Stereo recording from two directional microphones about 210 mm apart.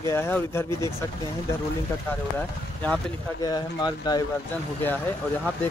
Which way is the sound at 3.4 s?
20° left (ahead or behind).